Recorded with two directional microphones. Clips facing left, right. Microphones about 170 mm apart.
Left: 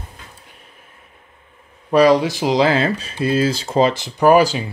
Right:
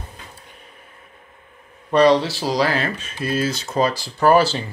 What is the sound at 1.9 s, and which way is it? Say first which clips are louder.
Speech: left 2 dB; 10° left (ahead or behind).